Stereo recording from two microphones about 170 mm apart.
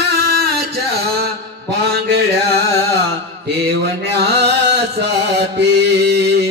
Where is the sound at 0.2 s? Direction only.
65° right (ahead or behind).